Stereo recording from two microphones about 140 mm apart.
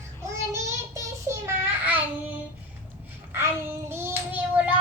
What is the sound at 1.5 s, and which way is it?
Child singing, 10° right (ahead or behind).